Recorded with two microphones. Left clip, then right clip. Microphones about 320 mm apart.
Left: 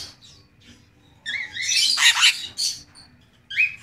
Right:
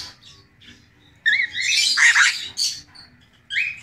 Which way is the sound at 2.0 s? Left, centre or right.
Centre.